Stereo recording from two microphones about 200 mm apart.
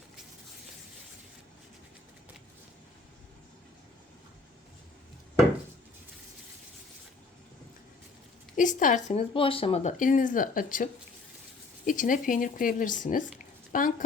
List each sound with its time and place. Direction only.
8.5 s speech: 40° left (ahead or behind)
11.9 s speech: 40° left (ahead or behind)